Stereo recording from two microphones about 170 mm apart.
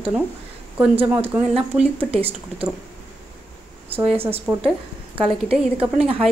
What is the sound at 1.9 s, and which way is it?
Speech, 35° right (ahead or behind).